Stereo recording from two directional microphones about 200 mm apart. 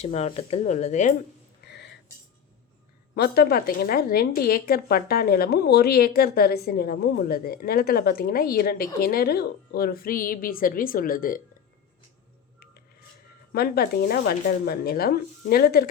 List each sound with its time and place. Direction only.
0.0 s speech: 30° left (ahead or behind)
1.6 s a sound: 60° left (ahead or behind)
3.2 s a woman's voice: 50° left (ahead or behind)
13.5 s a woman's voice: 50° left (ahead or behind)